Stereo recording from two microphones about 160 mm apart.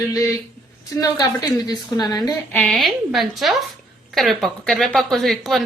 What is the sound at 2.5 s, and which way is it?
A woman's voice, centre (ahead or behind).